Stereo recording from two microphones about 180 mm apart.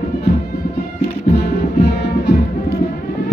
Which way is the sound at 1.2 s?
70° left (ahead or behind).